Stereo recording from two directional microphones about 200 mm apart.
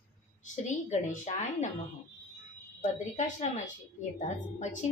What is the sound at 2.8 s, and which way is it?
A woman's voice, 35° left (ahead or behind).